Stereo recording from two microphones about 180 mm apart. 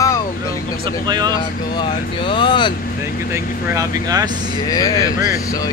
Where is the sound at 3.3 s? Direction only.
15° right (ahead or behind).